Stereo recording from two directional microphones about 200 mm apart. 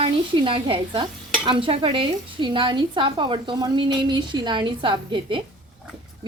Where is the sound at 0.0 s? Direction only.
25° right (ahead or behind).